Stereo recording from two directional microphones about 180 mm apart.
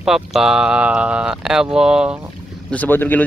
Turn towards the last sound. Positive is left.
turn(degrees=10)  # may be behind; listen again after turning